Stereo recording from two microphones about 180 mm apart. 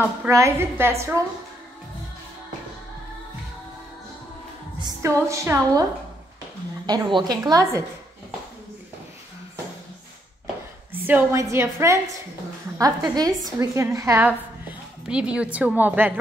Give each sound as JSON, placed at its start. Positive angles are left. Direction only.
{"t": 0.2, "sound": "a woman's voice", "side_deg": -15}
{"t": 4.7, "sound": "a woman's voice", "side_deg": -20}
{"t": 6.9, "sound": "a woman's voice", "side_deg": -25}
{"t": 10.9, "sound": "a woman's voice", "side_deg": -10}